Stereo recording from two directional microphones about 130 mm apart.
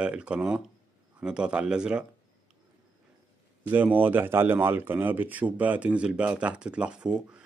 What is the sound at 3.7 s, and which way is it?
Speech, 15° right (ahead or behind).